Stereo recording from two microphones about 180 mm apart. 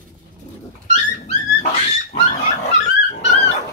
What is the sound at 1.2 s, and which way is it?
Dog, 40° left (ahead or behind).